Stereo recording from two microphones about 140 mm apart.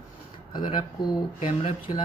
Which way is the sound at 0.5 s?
35° left (ahead or behind).